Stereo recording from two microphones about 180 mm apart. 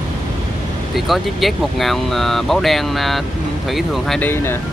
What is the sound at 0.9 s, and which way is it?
Speech, centre (ahead or behind).